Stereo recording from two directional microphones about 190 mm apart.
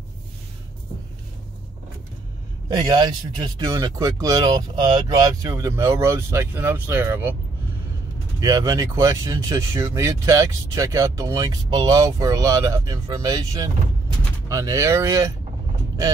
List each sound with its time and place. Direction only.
2.7 s speech: 20° right (ahead or behind)
8.4 s speech: 20° right (ahead or behind)